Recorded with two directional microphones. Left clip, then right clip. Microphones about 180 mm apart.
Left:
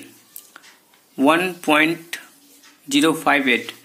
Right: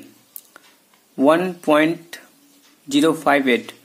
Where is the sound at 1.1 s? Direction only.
30° right (ahead or behind).